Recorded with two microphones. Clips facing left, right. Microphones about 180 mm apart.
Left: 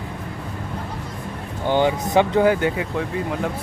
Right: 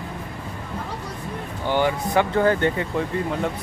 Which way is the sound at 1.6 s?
20° left (ahead or behind).